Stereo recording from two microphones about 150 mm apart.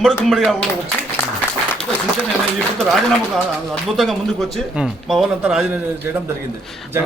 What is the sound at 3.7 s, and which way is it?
Speech, centre (ahead or behind).